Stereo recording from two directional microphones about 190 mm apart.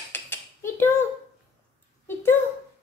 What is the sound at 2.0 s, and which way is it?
Speech, 10° left (ahead or behind).